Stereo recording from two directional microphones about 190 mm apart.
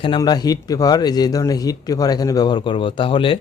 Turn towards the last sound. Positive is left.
turn(degrees=25)  # may be behind; listen again after turning